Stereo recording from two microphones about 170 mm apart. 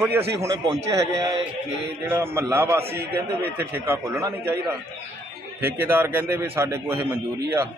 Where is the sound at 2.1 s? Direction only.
15° right (ahead or behind).